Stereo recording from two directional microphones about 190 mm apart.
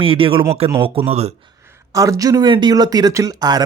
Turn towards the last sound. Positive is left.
turn(degrees=-20)  # may be behind; listen again after turning